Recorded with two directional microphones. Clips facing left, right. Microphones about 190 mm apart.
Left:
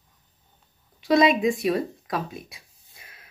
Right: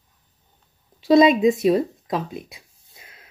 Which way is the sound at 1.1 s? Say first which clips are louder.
Right 5 dB; 25° right (ahead or behind).